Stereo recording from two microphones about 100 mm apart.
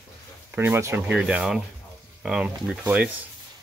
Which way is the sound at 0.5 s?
25° right (ahead or behind).